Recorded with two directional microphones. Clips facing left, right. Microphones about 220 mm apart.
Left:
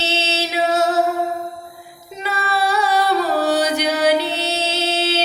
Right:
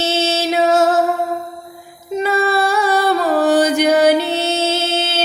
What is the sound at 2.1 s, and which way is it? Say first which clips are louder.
Music: right 7 dB; 50° right (ahead or behind).